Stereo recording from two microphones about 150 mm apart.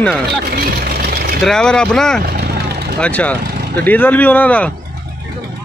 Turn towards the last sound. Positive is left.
turn(degrees=10)  # may be behind; listen again after turning